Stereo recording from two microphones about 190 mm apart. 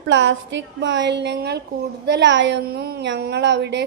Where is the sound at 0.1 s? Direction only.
70° right (ahead or behind).